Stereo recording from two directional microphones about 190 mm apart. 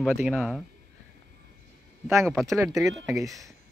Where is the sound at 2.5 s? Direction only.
15° right (ahead or behind).